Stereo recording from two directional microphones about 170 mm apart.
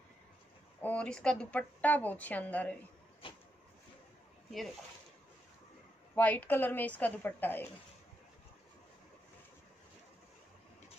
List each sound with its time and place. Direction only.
0.8 s speech: 5° left (ahead or behind)
3.2 s vehicle: 30° left (ahead or behind)
6.1 s speech: 10° left (ahead or behind)